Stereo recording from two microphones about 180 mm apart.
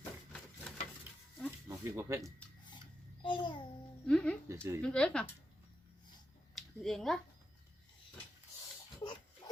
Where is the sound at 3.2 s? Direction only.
25° left (ahead or behind).